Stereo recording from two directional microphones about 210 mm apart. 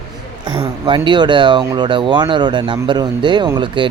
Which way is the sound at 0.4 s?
25° right (ahead or behind).